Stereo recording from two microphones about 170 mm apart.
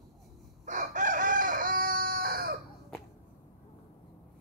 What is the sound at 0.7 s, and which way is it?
Chicken, 50° right (ahead or behind).